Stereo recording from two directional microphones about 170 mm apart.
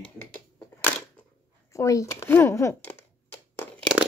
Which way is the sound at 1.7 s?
20° left (ahead or behind).